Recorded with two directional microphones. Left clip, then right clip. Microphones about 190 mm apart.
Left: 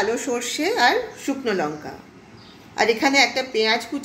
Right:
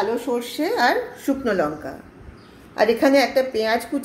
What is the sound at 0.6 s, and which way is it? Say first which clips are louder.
Speech: left 1 dB; 25° right (ahead or behind).